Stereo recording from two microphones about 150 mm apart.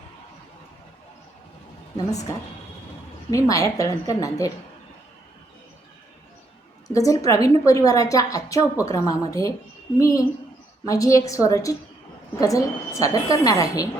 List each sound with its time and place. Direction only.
2.0 s a woman's voice: 25° left (ahead or behind)
6.8 s a woman's voice: 20° left (ahead or behind)